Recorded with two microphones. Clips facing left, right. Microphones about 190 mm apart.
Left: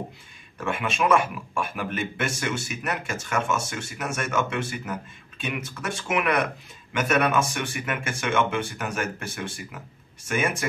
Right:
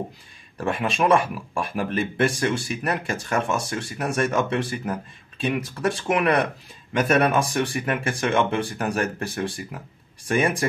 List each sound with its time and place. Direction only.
0.6 s speech: 35° right (ahead or behind)